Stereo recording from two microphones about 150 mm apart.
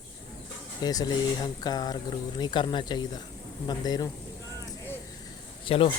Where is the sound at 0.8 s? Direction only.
25° left (ahead or behind).